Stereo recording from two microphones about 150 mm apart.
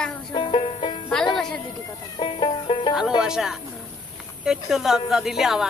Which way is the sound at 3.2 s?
5° right (ahead or behind).